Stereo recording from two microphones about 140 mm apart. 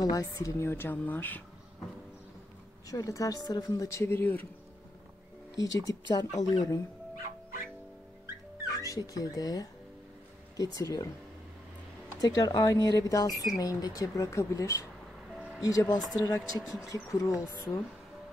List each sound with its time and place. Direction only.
0.0 s speech: 25° left (ahead or behind)
2.9 s speech: 25° left (ahead or behind)
5.8 s speech: 30° left (ahead or behind)
8.8 s speech: 25° left (ahead or behind)
12.2 s speech: 25° left (ahead or behind)